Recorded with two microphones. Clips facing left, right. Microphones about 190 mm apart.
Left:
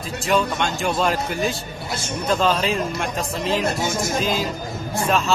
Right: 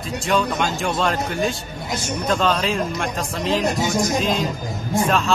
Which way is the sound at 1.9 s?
15° right (ahead or behind).